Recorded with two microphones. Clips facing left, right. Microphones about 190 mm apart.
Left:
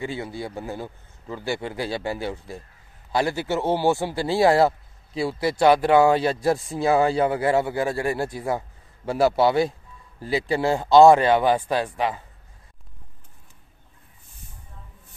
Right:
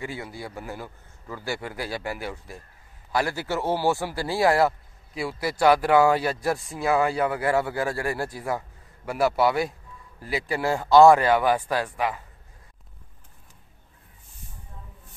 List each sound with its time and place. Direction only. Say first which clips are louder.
0.0 s a man's voice: left 4 dB; 25° left (ahead or behind)